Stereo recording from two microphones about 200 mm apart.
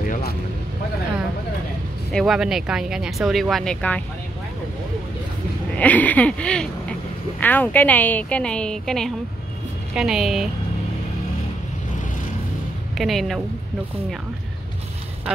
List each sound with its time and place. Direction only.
0.0 s vehicle: 45° left (ahead or behind)
2.1 s speech: centre (ahead or behind)
5.8 s speech: 10° left (ahead or behind)
12.9 s speech: centre (ahead or behind)